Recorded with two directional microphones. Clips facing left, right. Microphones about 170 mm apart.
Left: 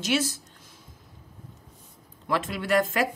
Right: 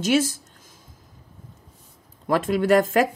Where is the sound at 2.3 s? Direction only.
45° right (ahead or behind).